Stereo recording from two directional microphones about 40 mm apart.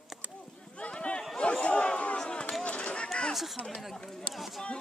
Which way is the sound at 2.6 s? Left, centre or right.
Left.